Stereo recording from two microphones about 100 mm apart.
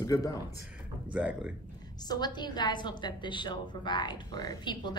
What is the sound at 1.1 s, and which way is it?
Speech, 15° right (ahead or behind).